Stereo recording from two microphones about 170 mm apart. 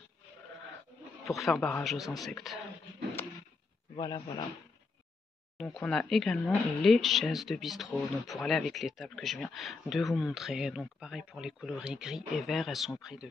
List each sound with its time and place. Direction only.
1.2 s speech: centre (ahead or behind)
3.2 s a sound: 10° left (ahead or behind)
3.9 s speech: 25° left (ahead or behind)
5.6 s speech: centre (ahead or behind)